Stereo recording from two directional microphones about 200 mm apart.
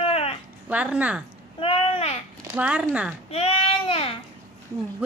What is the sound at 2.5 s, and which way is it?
Speech, 5° right (ahead or behind).